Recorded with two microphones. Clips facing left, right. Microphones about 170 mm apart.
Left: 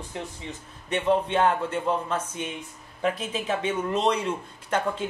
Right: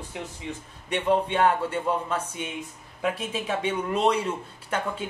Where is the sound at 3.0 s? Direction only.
10° right (ahead or behind).